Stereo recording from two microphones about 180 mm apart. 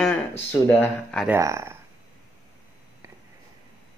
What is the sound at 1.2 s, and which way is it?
Speech, 15° right (ahead or behind).